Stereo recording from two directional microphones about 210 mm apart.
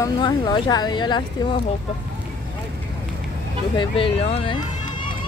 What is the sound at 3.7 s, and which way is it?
Speech, 25° left (ahead or behind).